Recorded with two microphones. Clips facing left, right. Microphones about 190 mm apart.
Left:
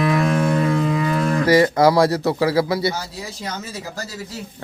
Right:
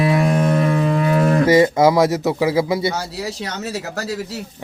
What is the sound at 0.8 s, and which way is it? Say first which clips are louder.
Livestock: right 3 dB; 50° right (ahead or behind).